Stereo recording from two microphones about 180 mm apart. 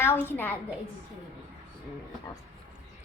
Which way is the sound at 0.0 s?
15° left (ahead or behind).